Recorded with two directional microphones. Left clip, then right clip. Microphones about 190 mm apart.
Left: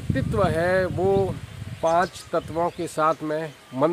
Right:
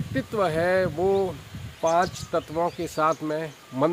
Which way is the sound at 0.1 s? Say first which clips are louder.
Left 2 dB; 10° left (ahead or behind).